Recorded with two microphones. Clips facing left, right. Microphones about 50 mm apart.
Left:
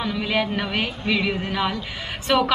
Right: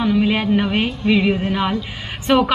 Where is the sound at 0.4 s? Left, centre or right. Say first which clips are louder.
Right 5 dB; centre.